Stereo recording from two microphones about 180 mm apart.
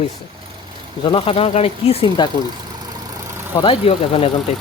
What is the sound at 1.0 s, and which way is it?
Speech, 30° left (ahead or behind).